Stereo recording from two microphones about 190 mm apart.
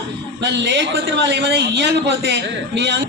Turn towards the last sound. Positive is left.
turn(degrees=-65)  # may be behind; listen again after turning